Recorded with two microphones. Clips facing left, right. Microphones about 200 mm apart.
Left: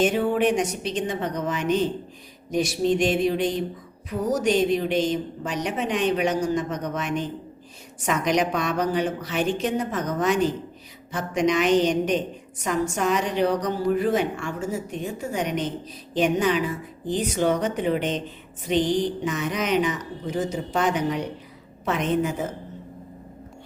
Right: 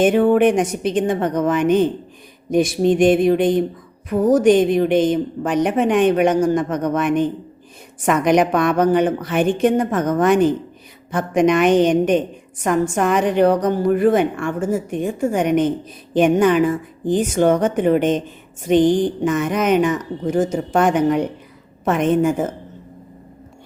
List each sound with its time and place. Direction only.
0.0 s a woman's voice: 55° right (ahead or behind)